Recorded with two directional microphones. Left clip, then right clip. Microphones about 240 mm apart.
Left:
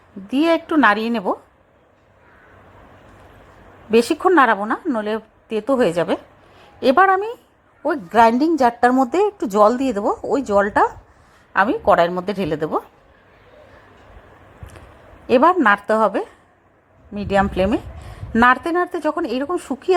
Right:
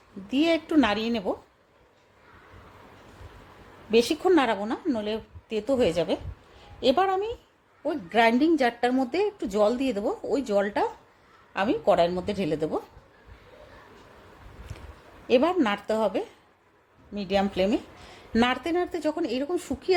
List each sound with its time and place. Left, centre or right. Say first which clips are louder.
0.3 s a woman's voice: left 7 dB; centre
4.0 s a woman's voice: left 8 dB; centre
15.3 s a woman's voice: left 9 dB; centre